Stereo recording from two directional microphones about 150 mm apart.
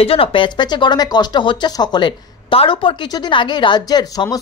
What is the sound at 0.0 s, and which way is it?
Speech, 40° left (ahead or behind).